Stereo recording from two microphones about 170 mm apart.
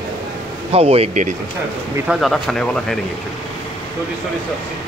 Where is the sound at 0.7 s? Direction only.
35° right (ahead or behind).